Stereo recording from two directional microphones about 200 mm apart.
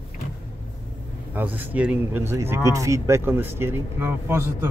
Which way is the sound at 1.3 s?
10° right (ahead or behind).